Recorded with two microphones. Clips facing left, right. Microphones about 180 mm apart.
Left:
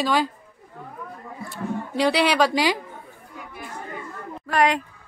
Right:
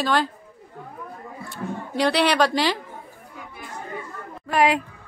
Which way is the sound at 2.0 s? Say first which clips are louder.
Even; 5° left (ahead or behind).